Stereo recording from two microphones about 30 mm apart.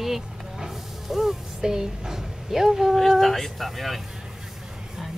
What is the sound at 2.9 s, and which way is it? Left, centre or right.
Speech, centre.